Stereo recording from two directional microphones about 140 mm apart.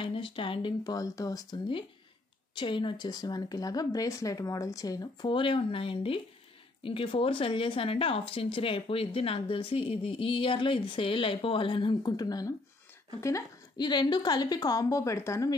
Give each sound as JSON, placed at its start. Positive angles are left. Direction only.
{"t": 0.0, "sound": "speech", "side_deg": 40}